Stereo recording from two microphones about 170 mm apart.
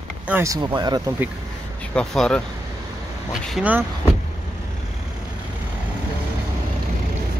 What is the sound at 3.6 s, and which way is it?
Speech, 10° right (ahead or behind).